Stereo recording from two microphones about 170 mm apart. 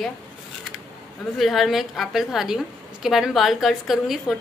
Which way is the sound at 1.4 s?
Centre (ahead or behind).